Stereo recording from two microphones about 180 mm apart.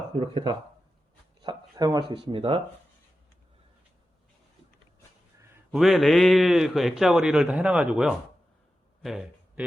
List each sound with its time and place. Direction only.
0.2 s speech: 30° right (ahead or behind)
5.7 s a man's voice: centre (ahead or behind)
9.0 s a sound: centre (ahead or behind)